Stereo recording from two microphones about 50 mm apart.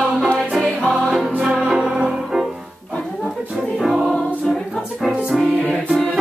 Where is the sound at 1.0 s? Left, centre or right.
Centre.